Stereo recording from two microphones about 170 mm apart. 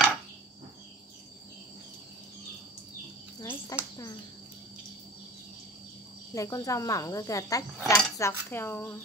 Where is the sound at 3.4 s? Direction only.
20° left (ahead or behind).